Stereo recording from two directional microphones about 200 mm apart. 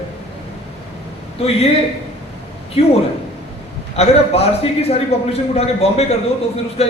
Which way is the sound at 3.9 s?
30° left (ahead or behind).